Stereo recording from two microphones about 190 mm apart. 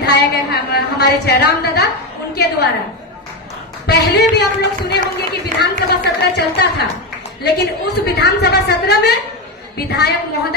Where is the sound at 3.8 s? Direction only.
65° left (ahead or behind).